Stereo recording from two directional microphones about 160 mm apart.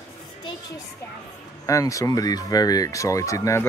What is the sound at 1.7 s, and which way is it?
Speech, 20° left (ahead or behind).